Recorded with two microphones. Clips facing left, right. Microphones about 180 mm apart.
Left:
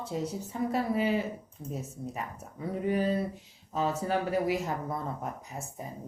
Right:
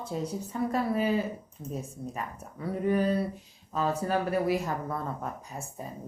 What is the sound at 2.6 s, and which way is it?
Speech, 20° left (ahead or behind).